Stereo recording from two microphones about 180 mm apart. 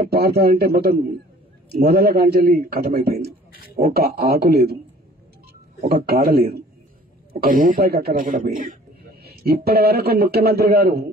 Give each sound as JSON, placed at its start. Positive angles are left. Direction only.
{"t": 0.1, "sound": "a man's voice", "side_deg": -60}
{"t": 5.9, "sound": "a man's voice", "side_deg": -60}